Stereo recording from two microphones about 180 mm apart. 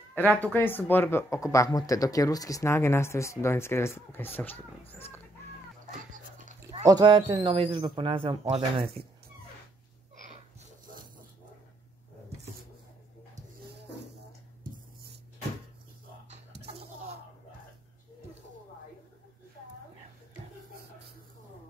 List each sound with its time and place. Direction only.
0.1 s speech: 10° left (ahead or behind)
6.8 s speech: 20° right (ahead or behind)